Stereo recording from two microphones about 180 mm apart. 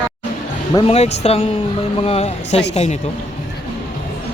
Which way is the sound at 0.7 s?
35° left (ahead or behind).